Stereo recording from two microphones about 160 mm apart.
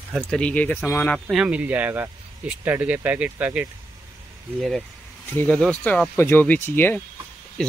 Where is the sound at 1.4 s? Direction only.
10° right (ahead or behind).